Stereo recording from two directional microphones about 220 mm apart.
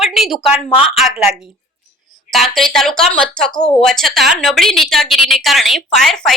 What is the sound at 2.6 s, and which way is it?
A woman's voice, centre (ahead or behind).